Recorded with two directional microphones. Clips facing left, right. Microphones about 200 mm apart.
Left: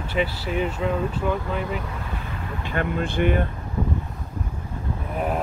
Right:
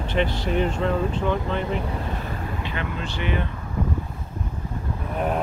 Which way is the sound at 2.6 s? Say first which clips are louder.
Left 5 dB; 50° left (ahead or behind).